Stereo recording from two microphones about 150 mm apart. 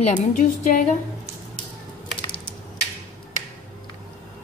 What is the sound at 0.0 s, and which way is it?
Speech, 60° left (ahead or behind).